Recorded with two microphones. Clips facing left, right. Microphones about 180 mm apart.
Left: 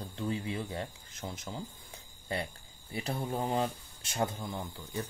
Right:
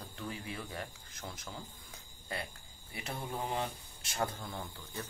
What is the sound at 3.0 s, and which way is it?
Speech, 35° left (ahead or behind).